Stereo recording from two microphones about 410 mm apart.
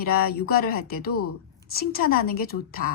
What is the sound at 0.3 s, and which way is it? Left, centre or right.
Speech, left.